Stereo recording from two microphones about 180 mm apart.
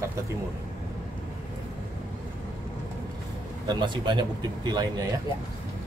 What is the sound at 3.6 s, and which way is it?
Speech, 25° right (ahead or behind).